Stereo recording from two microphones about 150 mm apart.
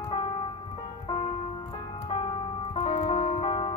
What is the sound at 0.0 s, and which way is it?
Music, 30° left (ahead or behind).